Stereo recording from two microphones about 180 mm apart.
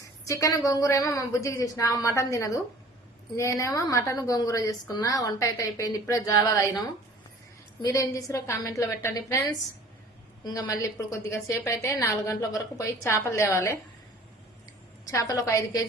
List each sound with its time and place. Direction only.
0.3 s a woman's voice: 20° left (ahead or behind)
3.6 s a woman's voice: 20° left (ahead or behind)
15.1 s a woman's voice: 20° left (ahead or behind)